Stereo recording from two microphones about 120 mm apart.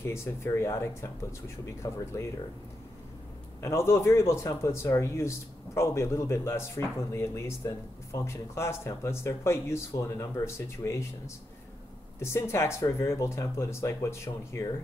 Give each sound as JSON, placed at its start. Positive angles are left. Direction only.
{"t": 0.0, "sound": "speech", "side_deg": 20}
{"t": 3.6, "sound": "speech", "side_deg": 20}
{"t": 12.2, "sound": "speech", "side_deg": 20}